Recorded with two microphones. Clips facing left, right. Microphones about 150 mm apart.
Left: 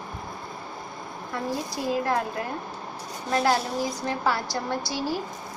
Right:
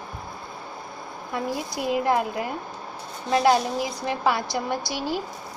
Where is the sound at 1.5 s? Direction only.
20° right (ahead or behind).